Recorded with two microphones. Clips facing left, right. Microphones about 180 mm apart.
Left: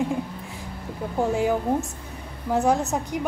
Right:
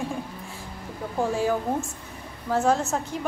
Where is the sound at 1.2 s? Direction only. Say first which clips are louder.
Left 2 dB; 20° left (ahead or behind).